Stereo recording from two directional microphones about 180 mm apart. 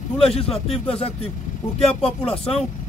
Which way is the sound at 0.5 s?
35° left (ahead or behind).